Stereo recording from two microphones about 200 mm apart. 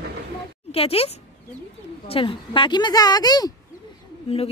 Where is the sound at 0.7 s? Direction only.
30° left (ahead or behind).